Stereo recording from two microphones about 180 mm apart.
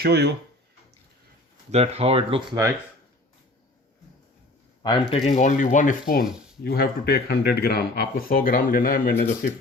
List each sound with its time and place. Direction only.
0.0 s speech: 65° right (ahead or behind)
1.7 s speech: 35° right (ahead or behind)
4.8 s speech: 25° left (ahead or behind); by 9.1 s 55° left (ahead or behind)